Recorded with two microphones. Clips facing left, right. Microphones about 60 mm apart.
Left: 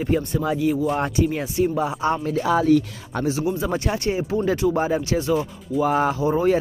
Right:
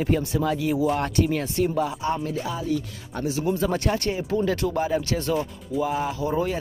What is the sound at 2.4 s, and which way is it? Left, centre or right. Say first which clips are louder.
Speech: left 9 dB; left.